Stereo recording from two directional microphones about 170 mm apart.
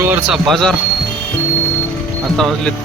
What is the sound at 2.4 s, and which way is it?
Speech, centre (ahead or behind).